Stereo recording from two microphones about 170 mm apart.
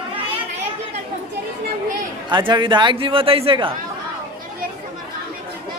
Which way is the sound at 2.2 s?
25° right (ahead or behind).